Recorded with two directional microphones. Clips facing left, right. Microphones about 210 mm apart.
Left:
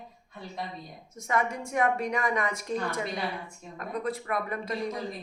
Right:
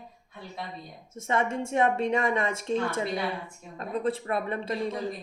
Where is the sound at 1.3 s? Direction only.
25° right (ahead or behind).